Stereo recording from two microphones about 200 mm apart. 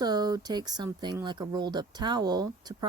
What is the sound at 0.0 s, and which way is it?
Speech, 20° right (ahead or behind).